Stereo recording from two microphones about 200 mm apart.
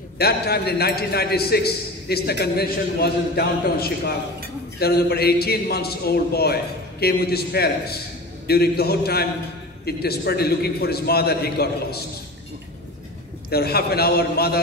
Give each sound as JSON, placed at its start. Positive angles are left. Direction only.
{"t": 0.2, "sound": "a man's voice", "side_deg": 50}
{"t": 4.7, "sound": "a man's voice", "side_deg": 50}
{"t": 13.5, "sound": "a man's voice", "side_deg": 50}